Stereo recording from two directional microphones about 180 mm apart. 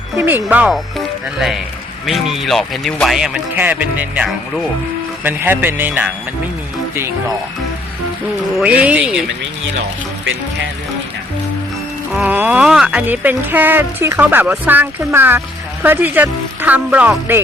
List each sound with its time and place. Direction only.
0.4 s speech: 5° right (ahead or behind)
8.5 s speech: 5° right (ahead or behind)
12.1 s speech: 10° right (ahead or behind)